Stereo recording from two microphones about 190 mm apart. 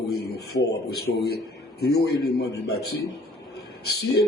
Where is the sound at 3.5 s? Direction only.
60° left (ahead or behind).